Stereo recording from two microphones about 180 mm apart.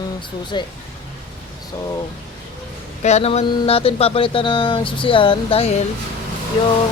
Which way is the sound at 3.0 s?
35° left (ahead or behind).